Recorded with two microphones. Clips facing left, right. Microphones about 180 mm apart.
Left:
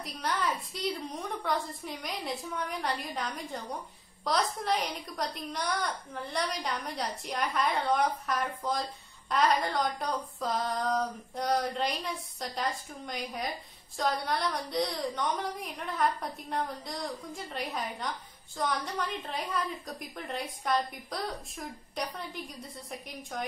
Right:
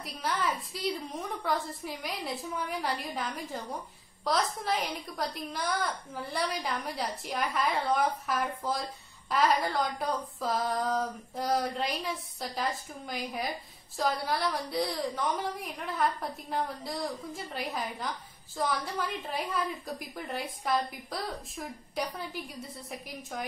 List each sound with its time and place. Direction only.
0.0 s a woman's voice: centre (ahead or behind)